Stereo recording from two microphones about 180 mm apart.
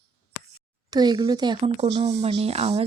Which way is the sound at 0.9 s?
20° right (ahead or behind).